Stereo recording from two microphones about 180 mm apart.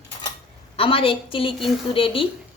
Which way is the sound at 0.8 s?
30° left (ahead or behind).